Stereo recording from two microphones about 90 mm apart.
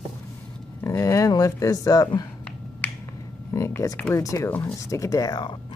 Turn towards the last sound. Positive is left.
turn(degrees=50)  # may be behind; listen again after turning